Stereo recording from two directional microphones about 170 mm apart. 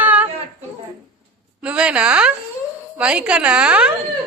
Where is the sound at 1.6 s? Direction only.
5° right (ahead or behind).